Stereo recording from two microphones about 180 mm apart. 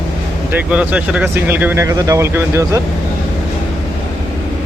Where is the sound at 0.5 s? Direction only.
10° right (ahead or behind).